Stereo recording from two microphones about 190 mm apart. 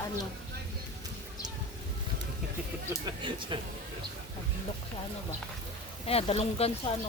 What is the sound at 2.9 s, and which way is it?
Speech, 25° right (ahead or behind).